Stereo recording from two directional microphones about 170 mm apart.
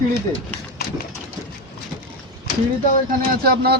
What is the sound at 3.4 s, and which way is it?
Speech, 65° right (ahead or behind).